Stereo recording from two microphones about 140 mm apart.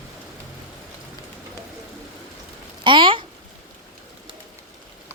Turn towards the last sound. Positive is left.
turn(degrees=-35)  # may be behind; listen again after turning